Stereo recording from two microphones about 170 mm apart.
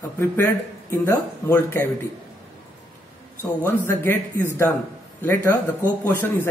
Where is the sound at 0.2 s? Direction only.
15° left (ahead or behind).